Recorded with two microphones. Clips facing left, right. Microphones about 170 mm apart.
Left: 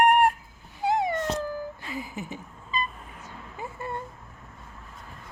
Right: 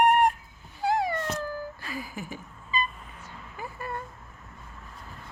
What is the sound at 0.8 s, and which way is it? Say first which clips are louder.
Cat: left 1 dB; 20° left (ahead or behind).